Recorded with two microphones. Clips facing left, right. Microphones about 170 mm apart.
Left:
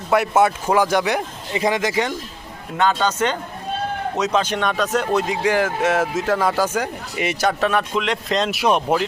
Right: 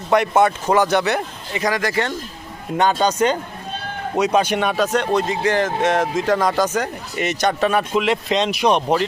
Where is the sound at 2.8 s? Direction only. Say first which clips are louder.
Right 2 dB; 15° right (ahead or behind).